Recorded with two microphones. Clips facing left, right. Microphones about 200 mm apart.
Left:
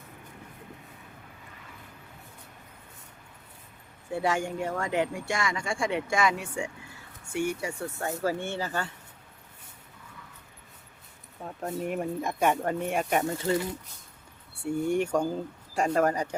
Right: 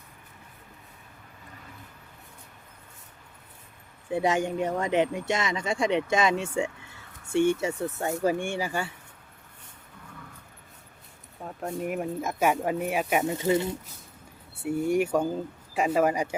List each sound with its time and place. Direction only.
4.1 s speech: 15° right (ahead or behind)
11.4 s speech: centre (ahead or behind)
13.3 s speech: 20° right (ahead or behind)
14.6 s speech: 5° right (ahead or behind)